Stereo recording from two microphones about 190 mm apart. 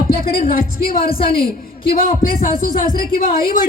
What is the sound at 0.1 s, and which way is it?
A man's voice, 55° left (ahead or behind).